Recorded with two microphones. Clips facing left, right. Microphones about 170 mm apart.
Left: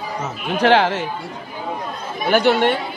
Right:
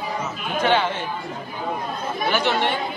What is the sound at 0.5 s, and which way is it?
Speech, 75° left (ahead or behind).